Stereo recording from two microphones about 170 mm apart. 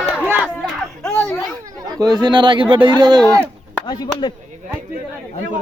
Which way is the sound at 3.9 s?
25° left (ahead or behind).